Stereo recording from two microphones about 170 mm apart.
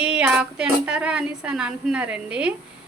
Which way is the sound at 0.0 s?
5° right (ahead or behind).